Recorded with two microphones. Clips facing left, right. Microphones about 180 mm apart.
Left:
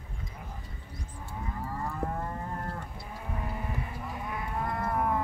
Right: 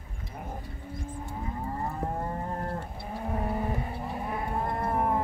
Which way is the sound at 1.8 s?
25° right (ahead or behind).